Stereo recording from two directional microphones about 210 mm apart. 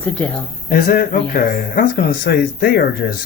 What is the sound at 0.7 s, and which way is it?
Speech, 40° left (ahead or behind).